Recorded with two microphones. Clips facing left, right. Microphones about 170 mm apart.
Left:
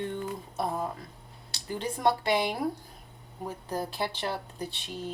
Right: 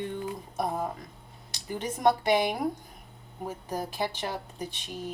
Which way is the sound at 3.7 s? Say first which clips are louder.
Even; 15° right (ahead or behind).